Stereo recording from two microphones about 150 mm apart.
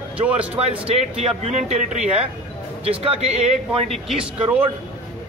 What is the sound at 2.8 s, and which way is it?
Speech, 40° right (ahead or behind).